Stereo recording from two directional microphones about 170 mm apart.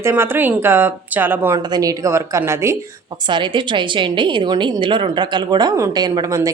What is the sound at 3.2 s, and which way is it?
A woman's voice, 30° right (ahead or behind).